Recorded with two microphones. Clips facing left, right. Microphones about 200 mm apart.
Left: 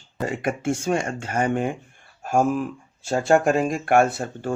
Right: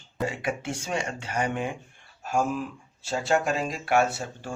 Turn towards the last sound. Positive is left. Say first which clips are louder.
# left 7 dB
turn(degrees=55)  # may be behind; listen again after turning